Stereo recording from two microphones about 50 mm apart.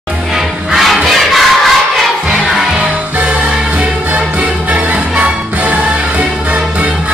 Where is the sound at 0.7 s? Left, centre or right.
Centre.